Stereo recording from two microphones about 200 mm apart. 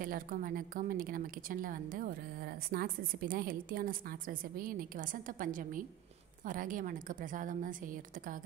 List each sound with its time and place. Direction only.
0.0 s a woman's voice: 45° right (ahead or behind)